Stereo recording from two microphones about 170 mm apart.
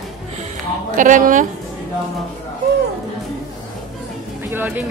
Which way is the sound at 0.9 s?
50° right (ahead or behind).